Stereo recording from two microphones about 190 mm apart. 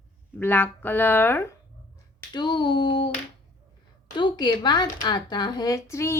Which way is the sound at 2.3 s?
25° left (ahead or behind).